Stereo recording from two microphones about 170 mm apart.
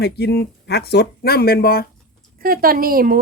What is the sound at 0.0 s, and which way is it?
Speech, 75° left (ahead or behind).